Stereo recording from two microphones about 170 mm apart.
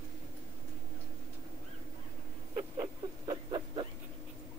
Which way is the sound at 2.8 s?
25° right (ahead or behind).